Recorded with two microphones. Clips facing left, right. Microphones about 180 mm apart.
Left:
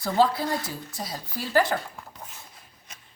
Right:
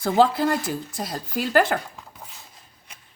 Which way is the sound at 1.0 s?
75° right (ahead or behind).